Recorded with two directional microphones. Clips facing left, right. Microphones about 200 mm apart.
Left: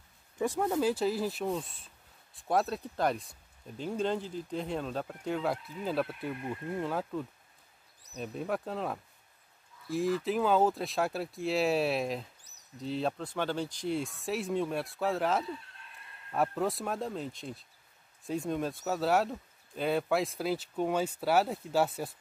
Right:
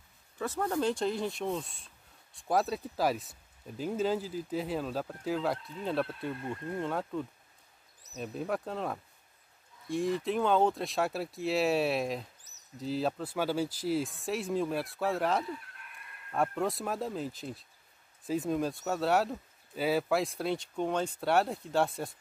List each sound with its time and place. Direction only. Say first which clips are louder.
0.4 s speech: left 2 dB; 15° left (ahead or behind)
6.3 s speech: even; 15° left (ahead or behind)
6.8 s speech: even; centre (ahead or behind)
15.4 s chicken: even; 25° left (ahead or behind)
16.3 s speech: even; centre (ahead or behind)